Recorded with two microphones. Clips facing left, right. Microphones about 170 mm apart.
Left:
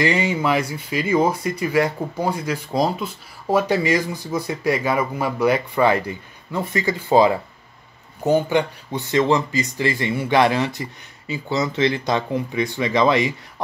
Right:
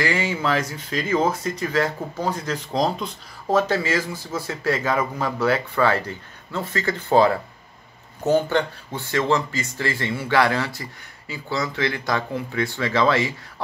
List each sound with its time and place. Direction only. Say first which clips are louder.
0.0 s speech: left 3 dB; 20° left (ahead or behind)